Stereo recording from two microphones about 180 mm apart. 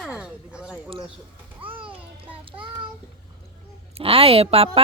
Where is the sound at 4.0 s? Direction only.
30° right (ahead or behind).